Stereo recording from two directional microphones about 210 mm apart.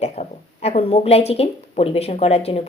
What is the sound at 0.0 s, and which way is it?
Speech, 30° left (ahead or behind).